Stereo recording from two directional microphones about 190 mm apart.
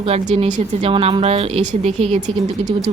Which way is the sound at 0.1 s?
35° right (ahead or behind).